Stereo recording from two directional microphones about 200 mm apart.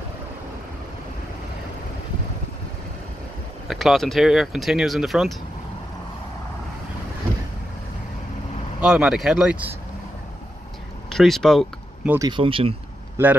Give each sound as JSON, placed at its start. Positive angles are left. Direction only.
{"t": 3.6, "sound": "speech", "side_deg": 0}
{"t": 8.8, "sound": "speech", "side_deg": -5}
{"t": 11.1, "sound": "speech", "side_deg": 0}
{"t": 12.1, "sound": "speech", "side_deg": -20}
{"t": 13.2, "sound": "speech", "side_deg": -10}